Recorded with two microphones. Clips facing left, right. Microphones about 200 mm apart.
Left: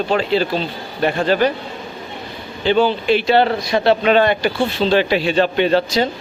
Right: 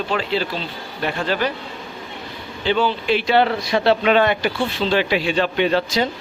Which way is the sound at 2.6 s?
45° left (ahead or behind).